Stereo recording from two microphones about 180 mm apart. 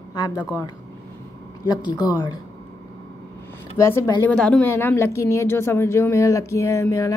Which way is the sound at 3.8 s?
15° left (ahead or behind).